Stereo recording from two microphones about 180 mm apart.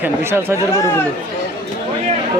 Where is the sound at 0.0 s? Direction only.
10° right (ahead or behind).